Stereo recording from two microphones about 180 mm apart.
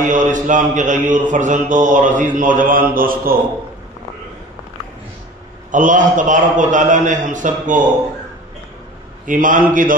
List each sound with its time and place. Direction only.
0.0 s mantra: 45° right (ahead or behind)
5.7 s mantra: 45° right (ahead or behind)
9.2 s mantra: 45° right (ahead or behind)